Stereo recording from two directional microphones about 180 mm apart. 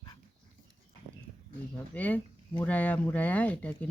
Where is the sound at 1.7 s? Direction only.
10° left (ahead or behind).